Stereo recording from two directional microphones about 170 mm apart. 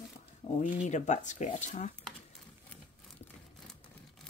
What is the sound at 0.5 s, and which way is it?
Speech, 45° left (ahead or behind).